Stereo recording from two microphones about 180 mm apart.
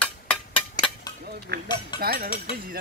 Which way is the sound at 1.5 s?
65° right (ahead or behind).